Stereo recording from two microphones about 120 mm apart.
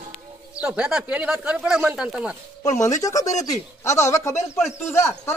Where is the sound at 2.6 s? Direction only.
30° left (ahead or behind).